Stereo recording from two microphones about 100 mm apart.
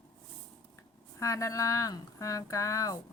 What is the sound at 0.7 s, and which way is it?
Speech, 30° left (ahead or behind).